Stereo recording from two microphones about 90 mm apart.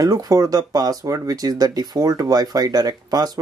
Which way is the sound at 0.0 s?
40° right (ahead or behind).